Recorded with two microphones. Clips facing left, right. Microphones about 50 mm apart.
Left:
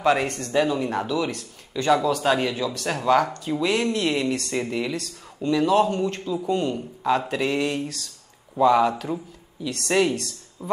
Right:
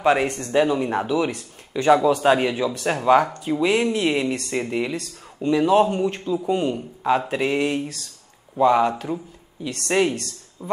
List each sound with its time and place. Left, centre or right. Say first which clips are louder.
0.0 s speech: right 2 dB; centre
10.6 s speech: even; centre